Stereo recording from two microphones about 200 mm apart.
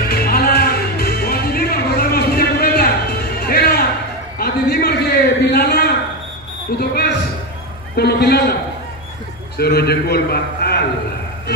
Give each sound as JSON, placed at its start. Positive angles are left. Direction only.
{"t": 0.1, "sound": "music", "side_deg": 50}
{"t": 4.4, "sound": "a sound", "side_deg": 50}
{"t": 6.8, "sound": "basketball bounce", "side_deg": 55}
{"t": 7.9, "sound": "a man's voice", "side_deg": 55}
{"t": 9.6, "sound": "a man's voice", "side_deg": 50}